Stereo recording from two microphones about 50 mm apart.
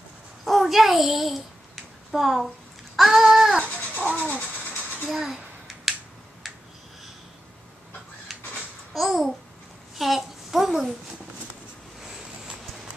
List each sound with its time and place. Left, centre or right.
0.5 s a child's voice: centre
3.0 s babbling: centre
3.9 s a sound: left
5.0 s a sound: centre
8.9 s babbling: centre
9.9 s a child's voice: centre